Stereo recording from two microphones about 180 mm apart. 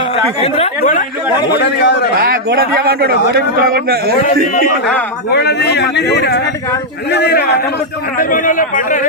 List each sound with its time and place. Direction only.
0.3 s speech: 35° left (ahead or behind)
0.8 s speech: 45° left (ahead or behind)
1.5 s a man's voice: 75° left (ahead or behind)
2.1 s a man's voice: 55° right (ahead or behind)
5.3 s speech: 65° left (ahead or behind)
8.2 s speech: 50° left (ahead or behind)